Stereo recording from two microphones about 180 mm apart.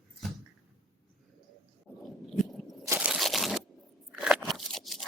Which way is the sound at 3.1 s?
Centre (ahead or behind).